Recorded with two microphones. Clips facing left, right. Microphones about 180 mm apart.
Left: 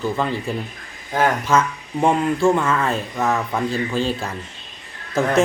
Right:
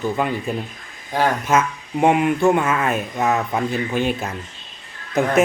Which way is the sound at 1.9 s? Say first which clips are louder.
Right 2 dB; 15° right (ahead or behind).